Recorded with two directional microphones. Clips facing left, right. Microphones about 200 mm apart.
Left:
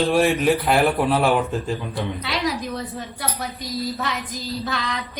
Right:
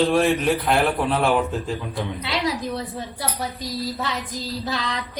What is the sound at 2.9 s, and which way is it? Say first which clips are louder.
Speech: right 1 dB; 30° right (ahead or behind).